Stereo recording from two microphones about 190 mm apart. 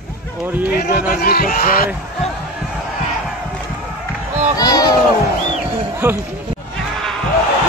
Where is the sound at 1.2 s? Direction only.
50° left (ahead or behind).